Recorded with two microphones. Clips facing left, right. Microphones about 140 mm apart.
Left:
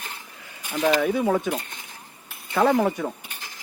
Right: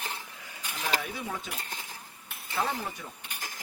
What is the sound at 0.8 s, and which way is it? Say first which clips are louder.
Speech: left 13 dB; 55° left (ahead or behind).